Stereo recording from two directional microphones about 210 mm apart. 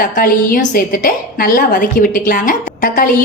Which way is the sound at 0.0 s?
40° left (ahead or behind).